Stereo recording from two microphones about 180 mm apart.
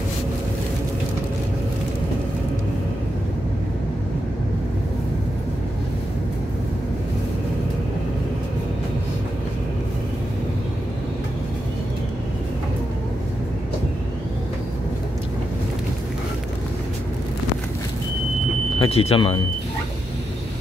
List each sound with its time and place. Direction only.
18.8 s speech: 30° left (ahead or behind)